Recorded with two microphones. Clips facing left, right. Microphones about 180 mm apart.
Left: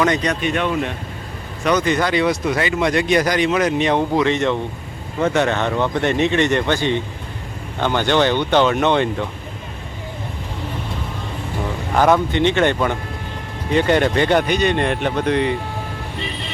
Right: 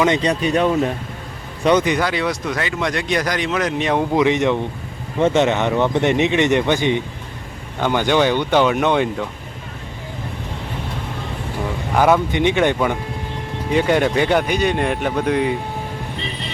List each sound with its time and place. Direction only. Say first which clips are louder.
0.0 s speech: right 1 dB; 25° right (ahead or behind)
1.8 s speech: left 2 dB; 10° right (ahead or behind)
4.1 s speech: right 1 dB; 15° right (ahead or behind)
11.9 s speech: even; 10° right (ahead or behind)